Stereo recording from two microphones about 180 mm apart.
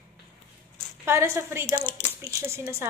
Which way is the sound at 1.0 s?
15° right (ahead or behind).